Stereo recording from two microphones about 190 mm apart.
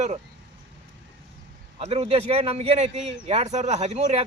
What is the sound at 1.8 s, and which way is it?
Speech, 35° right (ahead or behind).